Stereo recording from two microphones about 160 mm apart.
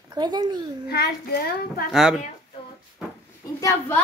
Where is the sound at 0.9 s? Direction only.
80° left.